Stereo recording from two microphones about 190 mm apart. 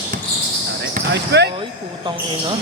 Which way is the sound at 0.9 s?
65° right (ahead or behind).